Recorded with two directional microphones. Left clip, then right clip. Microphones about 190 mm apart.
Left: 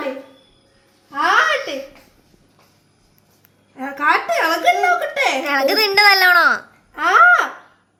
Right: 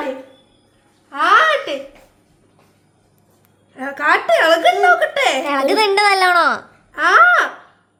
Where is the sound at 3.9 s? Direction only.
10° right (ahead or behind).